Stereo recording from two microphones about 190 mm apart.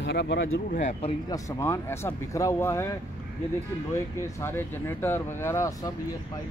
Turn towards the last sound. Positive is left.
turn(degrees=15)  # may be behind; listen again after turning